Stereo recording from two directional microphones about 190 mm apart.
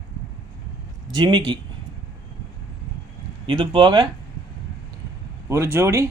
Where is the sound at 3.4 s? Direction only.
25° right (ahead or behind).